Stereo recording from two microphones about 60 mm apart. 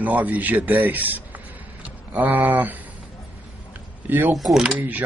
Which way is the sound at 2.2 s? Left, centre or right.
Right.